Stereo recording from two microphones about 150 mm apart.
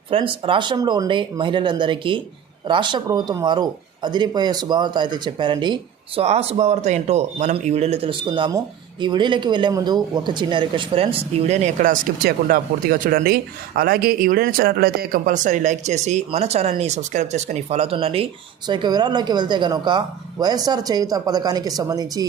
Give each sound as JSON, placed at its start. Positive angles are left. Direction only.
{"t": 0.1, "sound": "speech", "side_deg": -35}
{"t": 6.2, "sound": "speech", "side_deg": -45}